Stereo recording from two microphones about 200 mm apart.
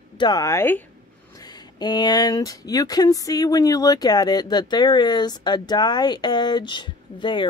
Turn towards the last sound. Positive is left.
turn(degrees=25)  # may be behind; listen again after turning